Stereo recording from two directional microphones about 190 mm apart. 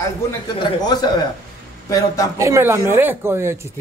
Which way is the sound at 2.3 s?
15° right (ahead or behind).